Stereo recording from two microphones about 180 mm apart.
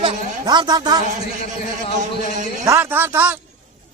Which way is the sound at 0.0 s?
25° right (ahead or behind).